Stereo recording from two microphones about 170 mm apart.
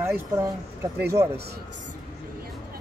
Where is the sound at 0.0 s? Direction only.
15° right (ahead or behind).